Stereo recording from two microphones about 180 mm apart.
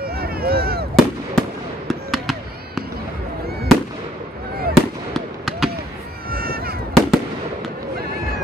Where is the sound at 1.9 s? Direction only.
Centre (ahead or behind).